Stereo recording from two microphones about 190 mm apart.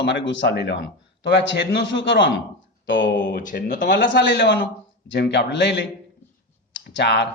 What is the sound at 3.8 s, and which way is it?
A man's voice, 70° left (ahead or behind).